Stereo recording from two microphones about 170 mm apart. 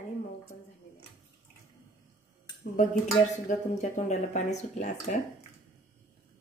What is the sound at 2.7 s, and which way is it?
Speech, 50° left (ahead or behind).